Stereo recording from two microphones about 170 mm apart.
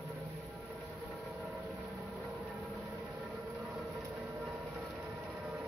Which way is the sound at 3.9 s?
10° right (ahead or behind).